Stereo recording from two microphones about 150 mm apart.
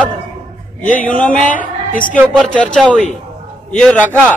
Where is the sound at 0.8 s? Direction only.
60° left (ahead or behind).